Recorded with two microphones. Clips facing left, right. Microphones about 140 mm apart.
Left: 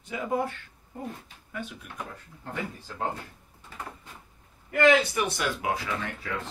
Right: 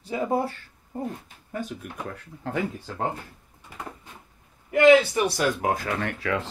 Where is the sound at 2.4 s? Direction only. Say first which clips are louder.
Right 7 dB; 90° right.